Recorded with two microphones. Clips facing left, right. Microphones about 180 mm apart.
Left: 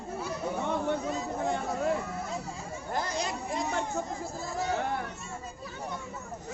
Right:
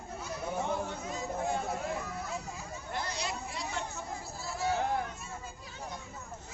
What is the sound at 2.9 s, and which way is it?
Chatter, 45° left (ahead or behind).